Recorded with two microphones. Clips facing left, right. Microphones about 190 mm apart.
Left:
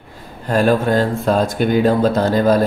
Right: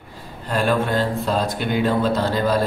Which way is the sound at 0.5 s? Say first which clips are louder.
Left 5 dB; 45° left (ahead or behind).